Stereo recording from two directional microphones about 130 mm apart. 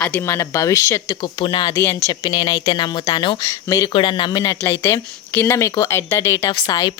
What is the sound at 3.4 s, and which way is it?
Speech, 25° left (ahead or behind).